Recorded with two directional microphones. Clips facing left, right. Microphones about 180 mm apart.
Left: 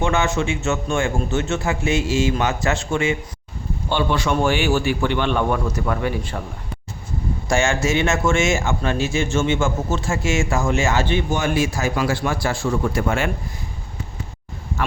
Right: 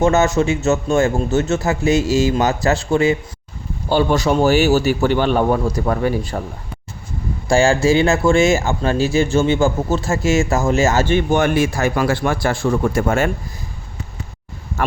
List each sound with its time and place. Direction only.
0.0 s speech: 40° right (ahead or behind)
7.4 s speech: 35° right (ahead or behind)